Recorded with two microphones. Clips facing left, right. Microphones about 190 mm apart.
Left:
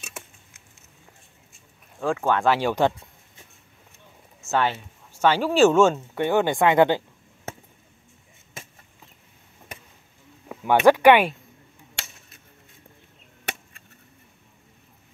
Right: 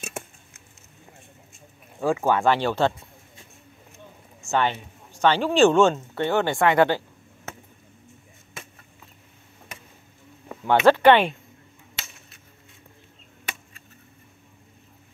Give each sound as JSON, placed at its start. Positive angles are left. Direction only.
{"t": 0.0, "sound": "a sound", "side_deg": -50}
{"t": 2.0, "sound": "speech", "side_deg": -5}
{"t": 2.4, "sound": "speech", "side_deg": 10}
{"t": 4.4, "sound": "speech", "side_deg": 5}
{"t": 10.5, "sound": "speech", "side_deg": 10}